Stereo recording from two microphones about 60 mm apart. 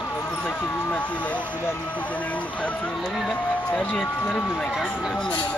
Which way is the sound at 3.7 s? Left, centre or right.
Centre.